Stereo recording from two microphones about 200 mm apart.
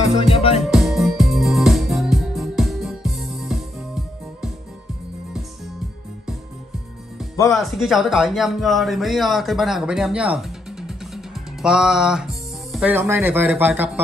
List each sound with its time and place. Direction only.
0.3 s music: 30° left (ahead or behind)
0.7 s music: centre (ahead or behind)
7.4 s a man's voice: centre (ahead or behind)